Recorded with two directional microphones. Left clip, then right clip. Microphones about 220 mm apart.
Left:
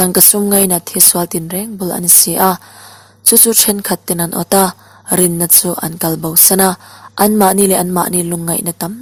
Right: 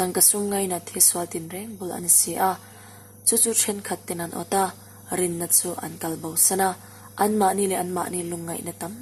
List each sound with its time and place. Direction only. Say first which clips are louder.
0.0 s a woman's voice: left 10 dB; 40° left (ahead or behind)